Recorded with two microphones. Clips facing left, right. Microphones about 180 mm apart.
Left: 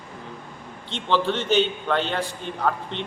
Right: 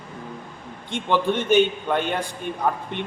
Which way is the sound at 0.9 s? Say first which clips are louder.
Right 1 dB; 10° right (ahead or behind).